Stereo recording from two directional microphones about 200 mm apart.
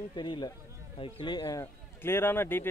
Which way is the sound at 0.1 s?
20° left (ahead or behind).